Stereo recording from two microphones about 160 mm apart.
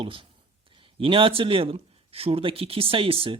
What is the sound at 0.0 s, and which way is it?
Speech, 35° right (ahead or behind).